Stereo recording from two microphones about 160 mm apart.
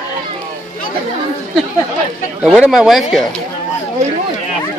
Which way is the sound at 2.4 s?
Centre (ahead or behind).